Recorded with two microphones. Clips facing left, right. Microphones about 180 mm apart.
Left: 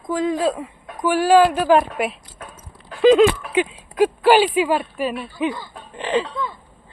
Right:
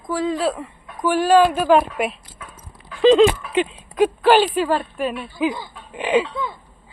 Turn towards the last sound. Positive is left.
turn(degrees=-10)  # may be behind; listen again after turning